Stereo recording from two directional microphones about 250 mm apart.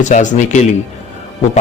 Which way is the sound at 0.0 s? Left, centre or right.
Left.